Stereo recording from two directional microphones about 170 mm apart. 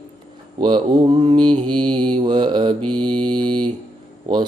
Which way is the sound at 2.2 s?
25° right (ahead or behind).